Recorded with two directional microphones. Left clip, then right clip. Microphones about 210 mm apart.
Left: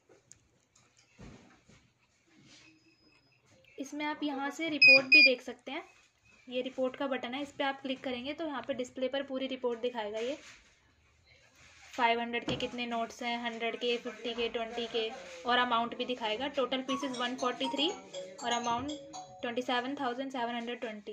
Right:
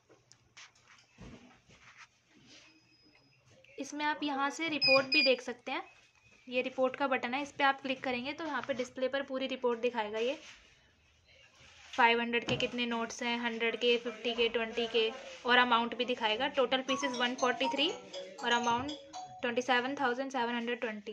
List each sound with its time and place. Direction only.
3.8 s a woman's voice: 10° right (ahead or behind)
12.0 s a woman's voice: 10° right (ahead or behind)